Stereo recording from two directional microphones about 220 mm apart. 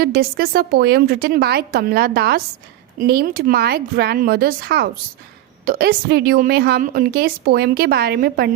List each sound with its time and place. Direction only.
0.0 s a woman's voice: 45° right (ahead or behind)